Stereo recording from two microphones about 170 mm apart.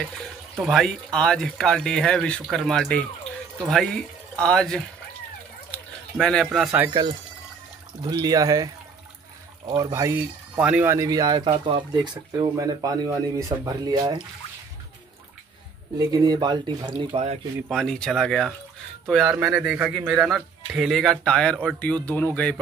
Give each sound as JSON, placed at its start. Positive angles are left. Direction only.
{"t": 0.6, "sound": "a man's voice", "side_deg": 0}
{"t": 6.1, "sound": "a man's voice", "side_deg": 5}
{"t": 6.9, "sound": "speech", "side_deg": -25}
{"t": 9.8, "sound": "speech", "side_deg": -20}
{"t": 16.0, "sound": "speech", "side_deg": -20}
{"t": 17.6, "sound": "a man's voice", "side_deg": 5}